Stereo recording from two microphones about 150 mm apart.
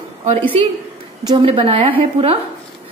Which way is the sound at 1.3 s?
35° right (ahead or behind).